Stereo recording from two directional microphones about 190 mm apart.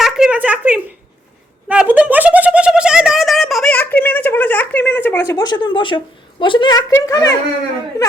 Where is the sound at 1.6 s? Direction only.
5° right (ahead or behind).